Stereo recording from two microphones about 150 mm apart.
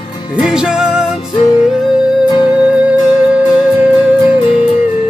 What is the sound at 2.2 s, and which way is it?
Music, 30° left (ahead or behind).